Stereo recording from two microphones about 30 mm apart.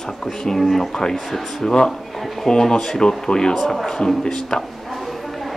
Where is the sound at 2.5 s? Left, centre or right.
Centre.